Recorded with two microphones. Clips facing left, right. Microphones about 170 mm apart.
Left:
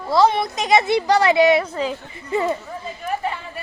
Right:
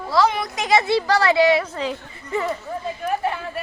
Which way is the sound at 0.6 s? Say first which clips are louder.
Left 1 dB; 20° left (ahead or behind).